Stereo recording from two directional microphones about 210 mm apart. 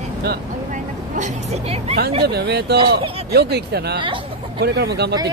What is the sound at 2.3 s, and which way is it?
Speech, 50° right (ahead or behind).